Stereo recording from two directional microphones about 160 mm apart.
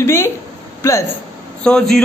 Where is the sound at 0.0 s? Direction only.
15° left (ahead or behind).